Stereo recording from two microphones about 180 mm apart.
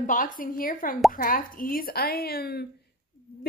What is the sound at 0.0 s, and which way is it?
A woman's voice, 45° left (ahead or behind).